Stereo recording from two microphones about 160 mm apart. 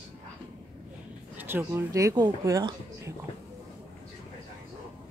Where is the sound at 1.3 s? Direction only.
15° right (ahead or behind).